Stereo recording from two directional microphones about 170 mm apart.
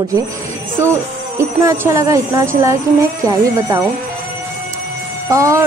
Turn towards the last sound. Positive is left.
turn(degrees=-20)  # may be behind; listen again after turning